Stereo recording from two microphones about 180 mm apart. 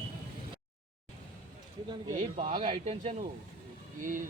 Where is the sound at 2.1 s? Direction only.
30° right (ahead or behind).